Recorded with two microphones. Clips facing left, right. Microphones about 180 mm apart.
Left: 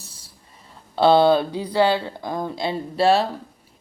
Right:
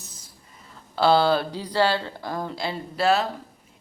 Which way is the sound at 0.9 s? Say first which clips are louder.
Left 4 dB; 20° left (ahead or behind).